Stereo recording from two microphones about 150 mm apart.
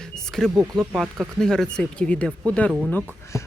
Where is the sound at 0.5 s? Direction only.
15° right (ahead or behind); by 2.3 s 5° left (ahead or behind).